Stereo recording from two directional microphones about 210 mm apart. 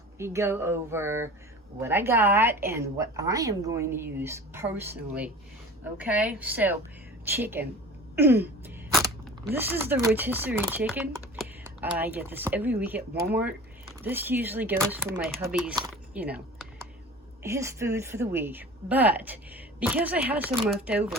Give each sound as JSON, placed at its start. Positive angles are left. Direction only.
{"t": 0.2, "sound": "a woman's voice", "side_deg": -10}
{"t": 8.1, "sound": "a sound", "side_deg": -10}
{"t": 9.5, "sound": "a woman's voice", "side_deg": -10}
{"t": 14.0, "sound": "a woman's voice", "side_deg": -10}
{"t": 15.9, "sound": "typing", "side_deg": -5}
{"t": 17.4, "sound": "a woman's voice", "side_deg": -15}